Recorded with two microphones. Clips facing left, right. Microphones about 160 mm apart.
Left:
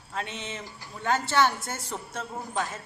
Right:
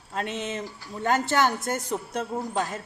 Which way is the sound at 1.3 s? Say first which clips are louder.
Left 1 dB; 45° right (ahead or behind).